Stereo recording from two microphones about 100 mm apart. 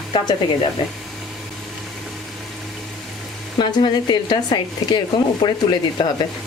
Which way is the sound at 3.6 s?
45° left (ahead or behind).